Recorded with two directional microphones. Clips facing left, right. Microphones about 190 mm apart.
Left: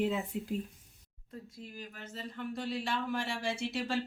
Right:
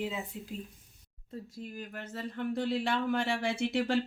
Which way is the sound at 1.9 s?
60° right (ahead or behind).